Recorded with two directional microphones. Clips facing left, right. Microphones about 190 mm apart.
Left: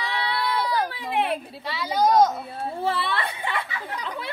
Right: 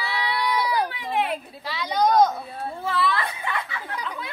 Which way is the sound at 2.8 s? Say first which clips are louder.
Right 2 dB; 30° left (ahead or behind).